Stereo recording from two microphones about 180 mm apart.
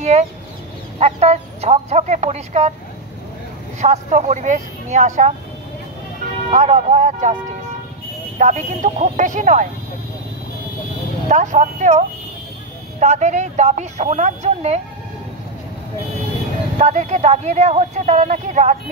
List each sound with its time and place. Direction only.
0.1 s speech: 35° right (ahead or behind)
3.8 s speech: 40° right (ahead or behind)
6.5 s speech: 40° right (ahead or behind)
8.4 s speech: 45° right (ahead or behind)
11.2 s speech: 40° right (ahead or behind)
13.0 s speech: 40° right (ahead or behind)
16.7 s speech: 40° right (ahead or behind)